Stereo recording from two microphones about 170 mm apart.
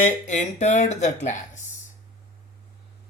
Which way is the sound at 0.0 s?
45° left (ahead or behind).